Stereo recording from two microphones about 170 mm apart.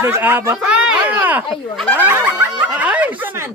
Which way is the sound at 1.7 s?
5° left (ahead or behind).